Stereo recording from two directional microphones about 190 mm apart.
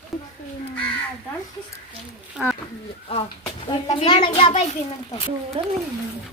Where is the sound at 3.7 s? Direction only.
30° left (ahead or behind).